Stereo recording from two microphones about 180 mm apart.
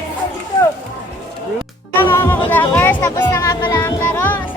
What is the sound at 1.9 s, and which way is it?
Speech, 15° left (ahead or behind).